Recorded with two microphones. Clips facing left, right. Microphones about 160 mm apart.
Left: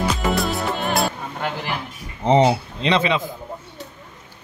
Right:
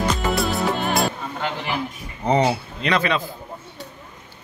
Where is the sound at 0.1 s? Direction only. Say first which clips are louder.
Even; centre (ahead or behind).